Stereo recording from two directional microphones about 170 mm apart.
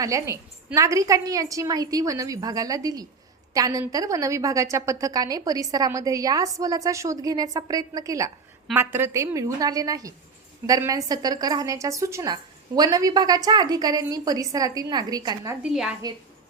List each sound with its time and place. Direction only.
0.0 s a woman's voice: 15° right (ahead or behind)
15.6 s a woman's voice: 5° right (ahead or behind)